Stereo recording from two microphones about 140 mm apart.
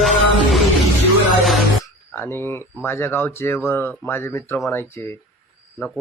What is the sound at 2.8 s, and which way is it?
Speech, 15° left (ahead or behind).